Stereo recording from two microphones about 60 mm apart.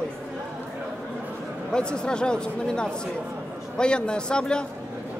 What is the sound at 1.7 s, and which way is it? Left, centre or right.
A woman's voice, centre.